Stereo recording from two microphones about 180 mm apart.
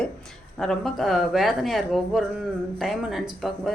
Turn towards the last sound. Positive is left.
turn(degrees=0)  # may be behind; listen again after turning